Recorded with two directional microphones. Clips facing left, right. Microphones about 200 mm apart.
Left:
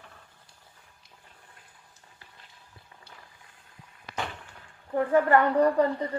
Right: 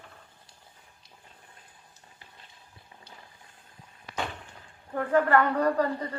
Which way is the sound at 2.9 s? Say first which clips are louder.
Right 3 dB; 20° right (ahead or behind).